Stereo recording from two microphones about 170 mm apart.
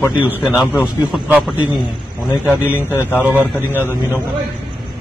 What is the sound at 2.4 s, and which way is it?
Speech, 10° right (ahead or behind).